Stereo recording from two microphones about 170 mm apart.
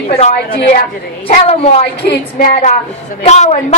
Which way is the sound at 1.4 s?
40° left (ahead or behind).